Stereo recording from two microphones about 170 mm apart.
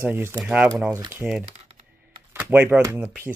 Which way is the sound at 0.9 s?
20° right (ahead or behind).